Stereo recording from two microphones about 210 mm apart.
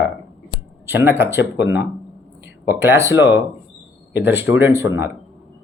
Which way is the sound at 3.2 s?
55° left (ahead or behind).